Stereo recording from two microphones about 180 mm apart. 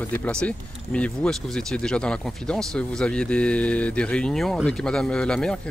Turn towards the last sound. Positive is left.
turn(degrees=5)  # may be behind; listen again after turning